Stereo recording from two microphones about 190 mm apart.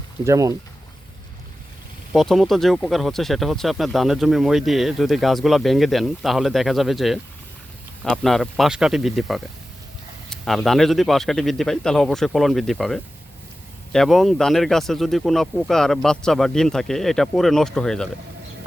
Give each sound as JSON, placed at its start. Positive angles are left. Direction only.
{"t": 0.3, "sound": "speech", "side_deg": -15}
{"t": 2.1, "sound": "speech", "side_deg": 0}